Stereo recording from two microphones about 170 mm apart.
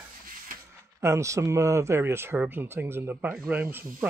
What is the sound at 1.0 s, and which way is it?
Speech, 15° right (ahead or behind).